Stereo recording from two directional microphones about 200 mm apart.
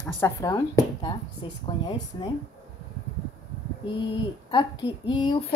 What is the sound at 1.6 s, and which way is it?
Speech, 20° left (ahead or behind).